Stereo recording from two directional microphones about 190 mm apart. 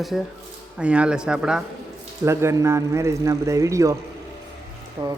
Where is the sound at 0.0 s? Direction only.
Centre (ahead or behind).